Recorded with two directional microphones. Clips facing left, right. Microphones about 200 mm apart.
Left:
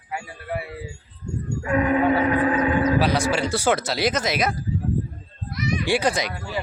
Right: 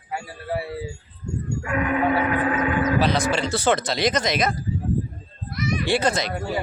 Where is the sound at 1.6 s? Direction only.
35° left (ahead or behind).